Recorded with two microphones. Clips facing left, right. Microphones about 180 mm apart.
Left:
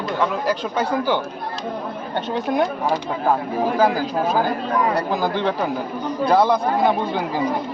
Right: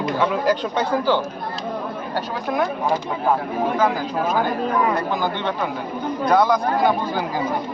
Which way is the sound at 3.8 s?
35° left (ahead or behind).